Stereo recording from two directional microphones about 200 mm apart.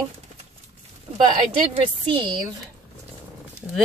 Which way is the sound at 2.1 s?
25° right (ahead or behind).